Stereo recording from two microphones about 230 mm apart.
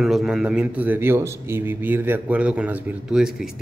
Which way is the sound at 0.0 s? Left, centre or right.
Centre.